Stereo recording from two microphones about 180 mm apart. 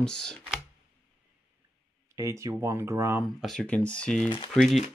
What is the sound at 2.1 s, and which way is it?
Speech, 15° right (ahead or behind).